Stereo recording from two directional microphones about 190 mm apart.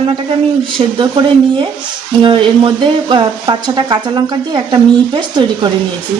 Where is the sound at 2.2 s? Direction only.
25° right (ahead or behind).